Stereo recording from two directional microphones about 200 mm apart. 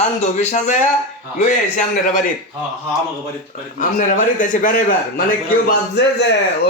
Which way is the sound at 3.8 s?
40° left (ahead or behind).